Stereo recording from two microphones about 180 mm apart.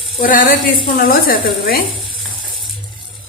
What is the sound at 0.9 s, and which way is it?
Speech, 55° left (ahead or behind).